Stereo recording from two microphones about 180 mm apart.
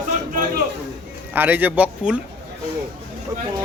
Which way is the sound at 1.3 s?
10° right (ahead or behind).